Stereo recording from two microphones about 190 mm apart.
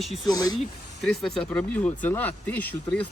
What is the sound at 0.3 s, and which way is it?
Speech, 20° left (ahead or behind).